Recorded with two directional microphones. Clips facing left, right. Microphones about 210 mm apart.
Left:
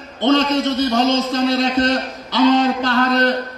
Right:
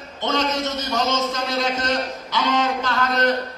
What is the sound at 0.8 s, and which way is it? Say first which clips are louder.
A man's voice: left 6 dB; 35° left (ahead or behind).